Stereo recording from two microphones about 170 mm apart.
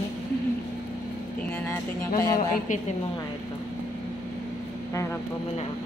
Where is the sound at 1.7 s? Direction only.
20° left (ahead or behind).